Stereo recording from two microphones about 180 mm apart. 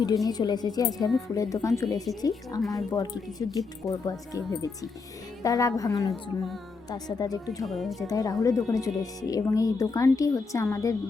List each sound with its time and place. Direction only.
0.3 s speech: 20° left (ahead or behind)
7.6 s speech: centre (ahead or behind)
8.0 s speech: 20° left (ahead or behind)